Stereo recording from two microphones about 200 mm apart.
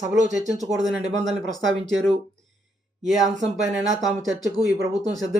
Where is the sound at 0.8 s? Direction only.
Centre (ahead or behind).